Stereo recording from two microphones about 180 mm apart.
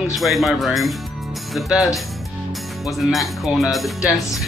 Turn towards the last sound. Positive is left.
turn(degrees=0)  # may be behind; listen again after turning